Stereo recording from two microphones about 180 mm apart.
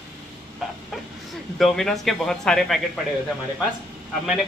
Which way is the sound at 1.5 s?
Centre (ahead or behind).